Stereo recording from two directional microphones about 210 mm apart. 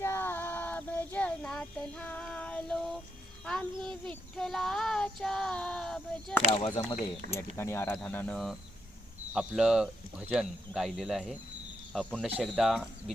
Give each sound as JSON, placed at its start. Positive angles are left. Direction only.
{"t": 0.0, "sound": "child singing", "side_deg": 10}
{"t": 3.4, "sound": "speech", "side_deg": 5}
{"t": 6.5, "sound": "speech", "side_deg": 20}